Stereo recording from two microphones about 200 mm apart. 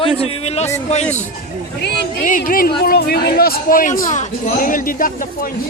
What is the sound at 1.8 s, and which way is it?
A man's voice, 45° left (ahead or behind).